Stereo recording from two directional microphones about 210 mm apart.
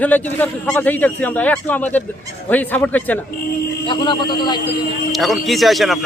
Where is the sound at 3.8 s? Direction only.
20° left (ahead or behind).